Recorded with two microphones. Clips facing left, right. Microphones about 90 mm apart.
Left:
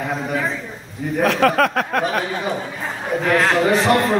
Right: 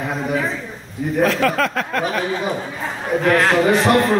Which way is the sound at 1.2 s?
60° left (ahead or behind).